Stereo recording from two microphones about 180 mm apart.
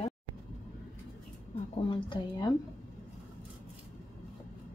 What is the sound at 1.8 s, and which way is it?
Speech, 30° left (ahead or behind).